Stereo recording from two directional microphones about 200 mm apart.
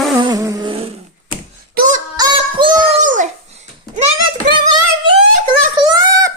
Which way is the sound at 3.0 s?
40° right (ahead or behind).